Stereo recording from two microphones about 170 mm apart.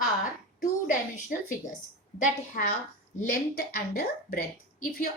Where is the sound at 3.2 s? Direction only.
60° left (ahead or behind).